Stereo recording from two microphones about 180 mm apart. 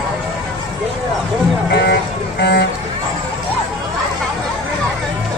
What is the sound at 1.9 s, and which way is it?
Vehicle, 65° left (ahead or behind).